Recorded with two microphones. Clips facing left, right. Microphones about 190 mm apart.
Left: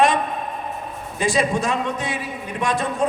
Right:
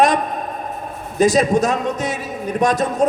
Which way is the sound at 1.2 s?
40° right (ahead or behind).